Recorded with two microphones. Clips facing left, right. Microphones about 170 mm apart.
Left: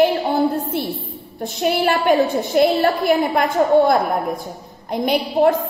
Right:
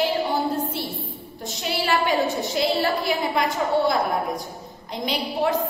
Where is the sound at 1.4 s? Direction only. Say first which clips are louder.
Left 9 dB; 55° left (ahead or behind).